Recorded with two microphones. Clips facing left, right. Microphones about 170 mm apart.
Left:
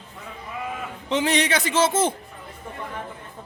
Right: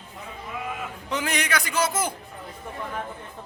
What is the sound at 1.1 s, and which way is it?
A man's voice, 25° left (ahead or behind).